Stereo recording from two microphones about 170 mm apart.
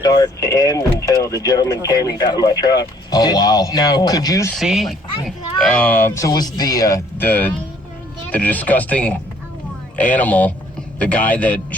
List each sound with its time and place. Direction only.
0.0 s speech: 20° left (ahead or behind)
4.5 s speech: centre (ahead or behind)